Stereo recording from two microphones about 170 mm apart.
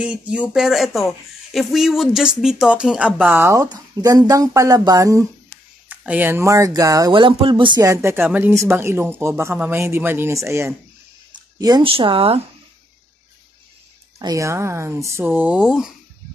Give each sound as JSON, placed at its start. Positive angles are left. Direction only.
{"t": 0.0, "sound": "speech", "side_deg": -5}
{"t": 5.9, "sound": "speech", "side_deg": -10}
{"t": 14.2, "sound": "speech", "side_deg": -20}